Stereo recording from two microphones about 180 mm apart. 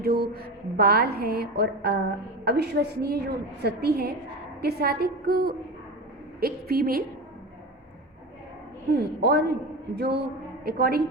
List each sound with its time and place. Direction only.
0.0 s a woman's voice: 60° right (ahead or behind)
9.2 s a man's voice: 65° right (ahead or behind)